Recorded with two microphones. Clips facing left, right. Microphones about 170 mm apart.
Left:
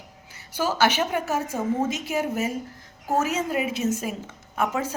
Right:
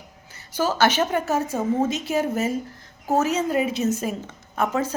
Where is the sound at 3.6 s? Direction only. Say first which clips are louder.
Right 2 dB; 35° right (ahead or behind).